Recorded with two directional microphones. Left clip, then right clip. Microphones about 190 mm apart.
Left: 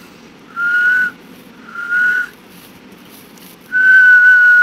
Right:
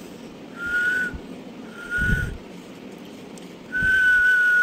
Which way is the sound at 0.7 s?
15° right (ahead or behind).